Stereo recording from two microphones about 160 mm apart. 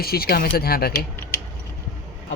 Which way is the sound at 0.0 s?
70° left (ahead or behind).